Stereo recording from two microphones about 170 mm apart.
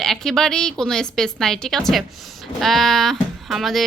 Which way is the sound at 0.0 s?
5° left (ahead or behind).